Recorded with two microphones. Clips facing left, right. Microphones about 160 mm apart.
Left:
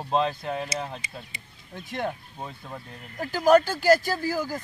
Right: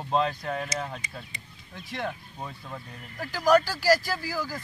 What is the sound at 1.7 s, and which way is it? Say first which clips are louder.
Speech: left 3 dB; 50° left (ahead or behind).